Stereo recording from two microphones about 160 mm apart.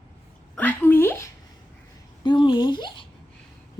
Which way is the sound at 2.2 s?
30° left (ahead or behind).